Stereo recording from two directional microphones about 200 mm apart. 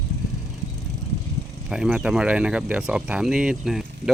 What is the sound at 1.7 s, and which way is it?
Speech, 5° right (ahead or behind).